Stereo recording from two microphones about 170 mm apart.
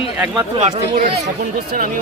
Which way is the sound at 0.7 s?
45° right (ahead or behind).